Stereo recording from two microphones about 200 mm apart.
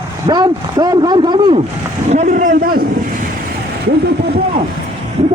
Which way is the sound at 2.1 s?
35° right (ahead or behind).